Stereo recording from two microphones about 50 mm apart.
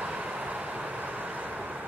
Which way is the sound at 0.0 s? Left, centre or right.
Right.